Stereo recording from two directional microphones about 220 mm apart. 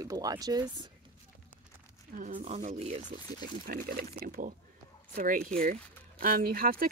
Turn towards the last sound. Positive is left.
turn(degrees=-40)  # may be behind; listen again after turning